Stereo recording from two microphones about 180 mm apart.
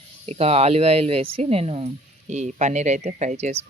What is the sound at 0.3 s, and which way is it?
Speech, 35° right (ahead or behind).